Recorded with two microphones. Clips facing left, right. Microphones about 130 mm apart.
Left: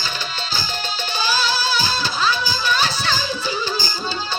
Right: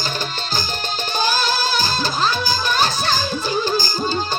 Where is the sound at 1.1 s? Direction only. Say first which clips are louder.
Right 2 dB; 45° right (ahead or behind).